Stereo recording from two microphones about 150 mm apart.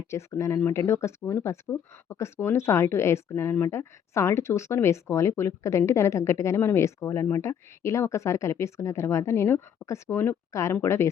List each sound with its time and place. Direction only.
0.1 s speech: 20° left (ahead or behind)